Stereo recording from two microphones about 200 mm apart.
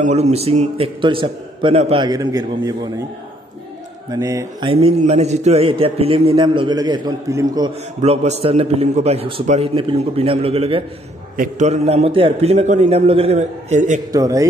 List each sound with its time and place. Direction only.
0.0 s a man's voice: 35° right (ahead or behind); by 3.1 s 15° right (ahead or behind)
4.1 s speech: 15° right (ahead or behind)
4.6 s a man's voice: 30° right (ahead or behind)
8.0 s a man's voice: 35° right (ahead or behind)
11.3 s a man's voice: 40° right (ahead or behind)
14.1 s speech: 15° right (ahead or behind)